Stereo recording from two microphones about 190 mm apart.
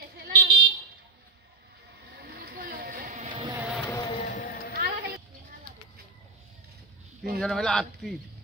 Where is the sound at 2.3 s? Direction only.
55° right (ahead or behind); by 3.3 s 40° right (ahead or behind).